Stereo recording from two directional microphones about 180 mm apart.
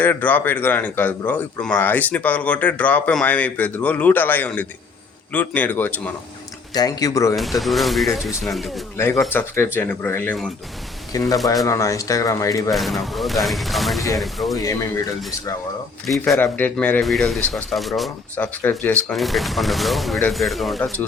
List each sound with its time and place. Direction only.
0.0 s a man's voice: 10° left (ahead or behind)
6.7 s speech: 20° left (ahead or behind)
7.3 s speech: centre (ahead or behind)
9.0 s a man's voice: 15° left (ahead or behind)
11.6 s a man's voice: 15° left (ahead or behind)
12.7 s speech: centre (ahead or behind)
14.6 s a man's voice: 15° left (ahead or behind)
16.0 s speech: centre (ahead or behind)